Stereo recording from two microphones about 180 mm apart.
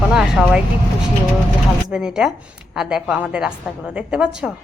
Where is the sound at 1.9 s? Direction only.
5° right (ahead or behind).